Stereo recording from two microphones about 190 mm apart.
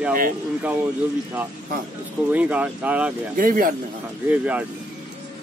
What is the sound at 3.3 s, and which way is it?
Speech, 45° right (ahead or behind).